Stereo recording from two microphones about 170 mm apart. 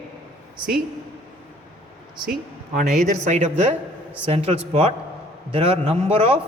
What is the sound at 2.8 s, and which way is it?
A man's voice, 45° right (ahead or behind).